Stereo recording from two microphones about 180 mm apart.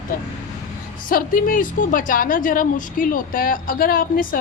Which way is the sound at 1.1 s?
50° left (ahead or behind).